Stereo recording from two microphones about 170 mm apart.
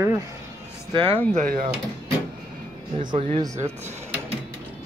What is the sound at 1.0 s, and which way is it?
Speech, 15° left (ahead or behind).